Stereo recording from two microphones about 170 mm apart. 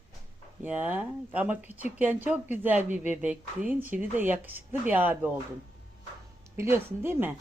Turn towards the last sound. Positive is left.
turn(degrees=-10)  # may be behind; listen again after turning